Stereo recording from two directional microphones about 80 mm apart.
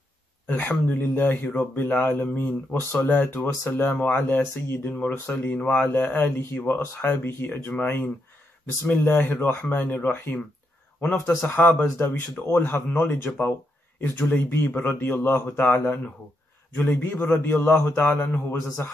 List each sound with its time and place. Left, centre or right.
0.5 s speech: left
8.8 s speech: left